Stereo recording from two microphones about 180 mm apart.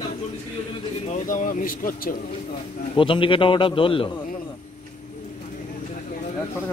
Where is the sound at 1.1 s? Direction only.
45° left (ahead or behind).